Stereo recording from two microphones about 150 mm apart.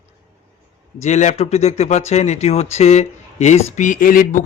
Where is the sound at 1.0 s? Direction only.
50° left (ahead or behind).